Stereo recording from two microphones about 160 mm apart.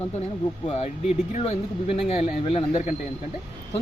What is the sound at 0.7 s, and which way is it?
Speech, 40° left (ahead or behind).